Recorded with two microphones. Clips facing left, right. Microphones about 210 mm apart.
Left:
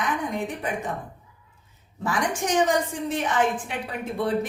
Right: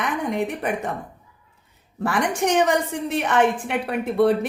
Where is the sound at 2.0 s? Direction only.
65° right (ahead or behind).